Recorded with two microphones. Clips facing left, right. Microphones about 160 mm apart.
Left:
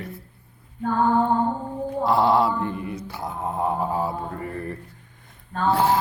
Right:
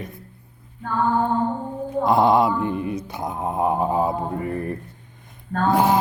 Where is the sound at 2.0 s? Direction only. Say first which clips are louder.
Right 2 dB; 20° right (ahead or behind).